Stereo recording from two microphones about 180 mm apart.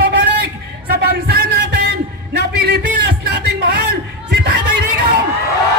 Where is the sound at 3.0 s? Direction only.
60° right (ahead or behind).